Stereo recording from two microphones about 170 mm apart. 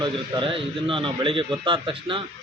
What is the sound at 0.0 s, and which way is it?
A man's voice, 30° right (ahead or behind).